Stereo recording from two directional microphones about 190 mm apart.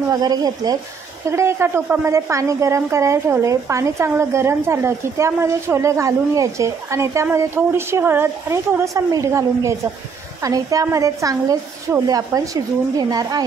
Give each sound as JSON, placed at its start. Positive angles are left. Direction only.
{"t": 0.1, "sound": "a woman's voice", "side_deg": -20}